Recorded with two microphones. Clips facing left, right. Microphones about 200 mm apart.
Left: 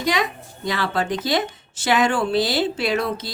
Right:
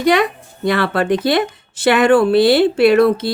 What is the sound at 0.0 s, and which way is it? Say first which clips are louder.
Speech: right 8 dB; 60° right (ahead or behind).